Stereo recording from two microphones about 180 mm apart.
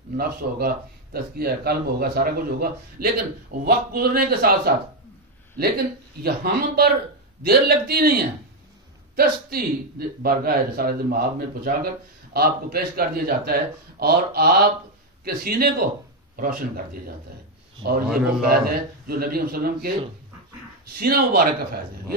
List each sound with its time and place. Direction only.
0.2 s speech: 55° right (ahead or behind)
6.2 s speech: 55° right (ahead or behind)
18.0 s a man's voice: 5° right (ahead or behind)
18.5 s speech: 55° right (ahead or behind)
21.0 s speech: 60° right (ahead or behind)